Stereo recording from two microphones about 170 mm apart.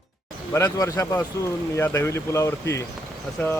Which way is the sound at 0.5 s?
20° left (ahead or behind).